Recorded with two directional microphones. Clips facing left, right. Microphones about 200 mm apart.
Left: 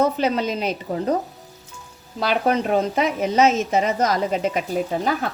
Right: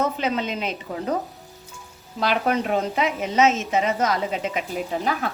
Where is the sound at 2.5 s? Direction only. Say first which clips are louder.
Left 3 dB; 40° left (ahead or behind).